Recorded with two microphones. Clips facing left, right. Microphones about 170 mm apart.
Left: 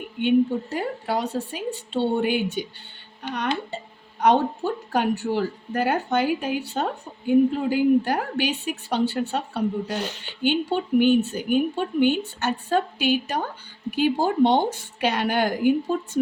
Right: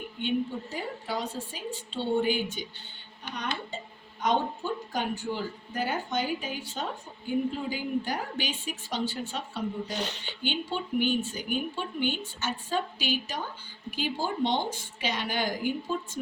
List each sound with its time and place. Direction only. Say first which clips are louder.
0.7 s speech: left 7 dB; 65° left (ahead or behind)